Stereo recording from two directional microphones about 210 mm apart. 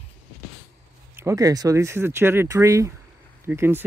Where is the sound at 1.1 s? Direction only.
15° right (ahead or behind).